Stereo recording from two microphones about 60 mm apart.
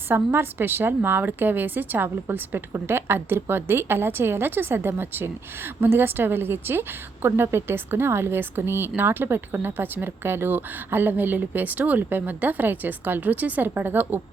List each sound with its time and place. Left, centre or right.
0.1 s speech: right